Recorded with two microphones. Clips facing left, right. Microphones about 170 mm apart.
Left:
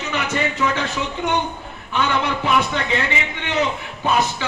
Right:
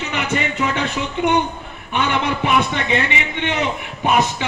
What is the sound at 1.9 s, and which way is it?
A man's voice, 20° right (ahead or behind).